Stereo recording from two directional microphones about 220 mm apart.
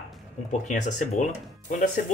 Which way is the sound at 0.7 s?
35° left (ahead or behind).